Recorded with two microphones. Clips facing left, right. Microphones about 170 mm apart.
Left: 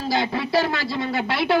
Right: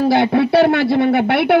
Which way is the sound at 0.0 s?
60° right (ahead or behind).